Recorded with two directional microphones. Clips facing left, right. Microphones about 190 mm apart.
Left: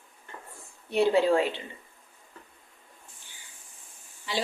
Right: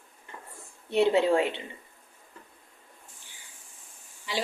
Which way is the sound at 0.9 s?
25° right (ahead or behind).